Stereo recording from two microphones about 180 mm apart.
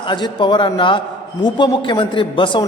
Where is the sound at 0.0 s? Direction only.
25° left (ahead or behind).